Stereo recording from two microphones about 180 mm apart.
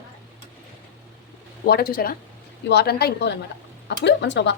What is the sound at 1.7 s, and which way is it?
A woman's voice, 60° left (ahead or behind).